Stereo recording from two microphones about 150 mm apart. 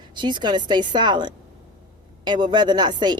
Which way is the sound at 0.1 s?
30° right (ahead or behind).